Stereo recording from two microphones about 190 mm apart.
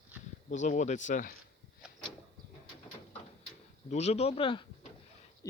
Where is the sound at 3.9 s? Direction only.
35° left (ahead or behind).